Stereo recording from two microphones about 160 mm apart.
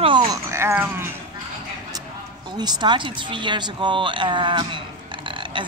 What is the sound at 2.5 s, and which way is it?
Speech, 25° right (ahead or behind).